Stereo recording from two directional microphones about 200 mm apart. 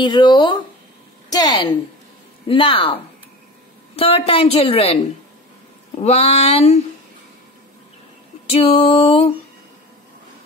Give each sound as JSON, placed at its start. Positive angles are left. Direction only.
{"t": 0.0, "sound": "a woman's voice", "side_deg": 20}
{"t": 6.0, "sound": "music", "side_deg": 30}
{"t": 8.5, "sound": "music", "side_deg": 30}